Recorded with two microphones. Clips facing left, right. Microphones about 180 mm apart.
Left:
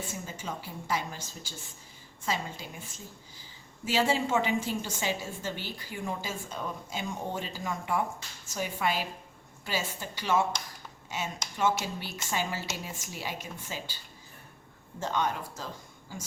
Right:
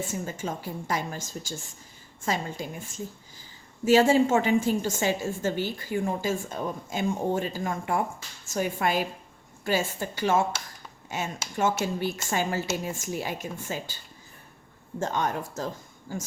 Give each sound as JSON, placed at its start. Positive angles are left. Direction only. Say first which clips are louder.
{"t": 0.1, "sound": "a woman's voice", "louder": "right 6 dB", "side_deg": -50}
{"t": 11.5, "sound": "a woman's voice", "louder": "right 3 dB", "side_deg": -50}
{"t": 14.9, "sound": "a woman's voice", "louder": "right 3 dB", "side_deg": -45}